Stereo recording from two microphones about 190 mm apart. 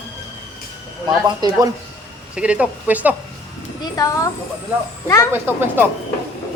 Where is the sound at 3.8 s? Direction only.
20° left (ahead or behind).